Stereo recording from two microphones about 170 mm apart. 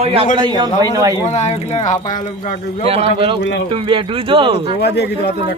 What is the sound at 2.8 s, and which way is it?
A man's voice, 35° right (ahead or behind).